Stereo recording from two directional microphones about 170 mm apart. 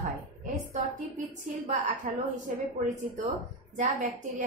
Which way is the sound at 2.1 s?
45° right (ahead or behind).